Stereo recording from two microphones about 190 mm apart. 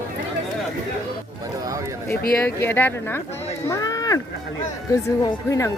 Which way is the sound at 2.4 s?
10° left (ahead or behind).